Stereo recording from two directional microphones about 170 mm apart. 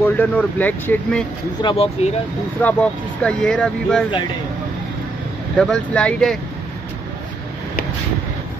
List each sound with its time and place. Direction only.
0.2 s speech: 10° left (ahead or behind)
1.6 s speech: 30° left (ahead or behind)
2.6 s speech: 5° left (ahead or behind)
5.6 s speech: 5° left (ahead or behind)